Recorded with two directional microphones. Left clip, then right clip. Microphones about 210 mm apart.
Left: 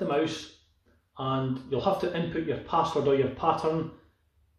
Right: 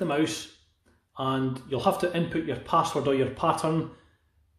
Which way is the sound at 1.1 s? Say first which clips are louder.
Right 2 dB; 45° right (ahead or behind).